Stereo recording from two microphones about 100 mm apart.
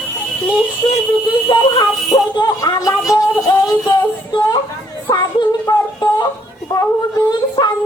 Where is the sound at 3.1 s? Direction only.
40° left (ahead or behind).